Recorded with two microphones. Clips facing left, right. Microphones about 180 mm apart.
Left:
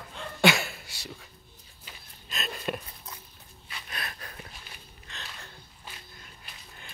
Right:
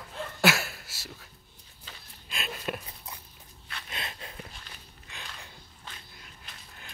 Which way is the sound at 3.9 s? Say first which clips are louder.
Even; 25° right (ahead or behind).